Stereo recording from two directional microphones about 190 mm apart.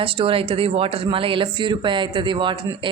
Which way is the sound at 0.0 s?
30° right (ahead or behind).